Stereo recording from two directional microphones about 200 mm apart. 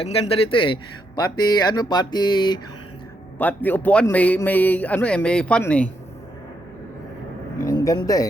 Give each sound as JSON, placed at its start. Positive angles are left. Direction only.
{"t": 0.0, "sound": "a man's voice", "side_deg": 30}
{"t": 3.3, "sound": "a man's voice", "side_deg": 10}
{"t": 7.6, "sound": "a man's voice", "side_deg": 15}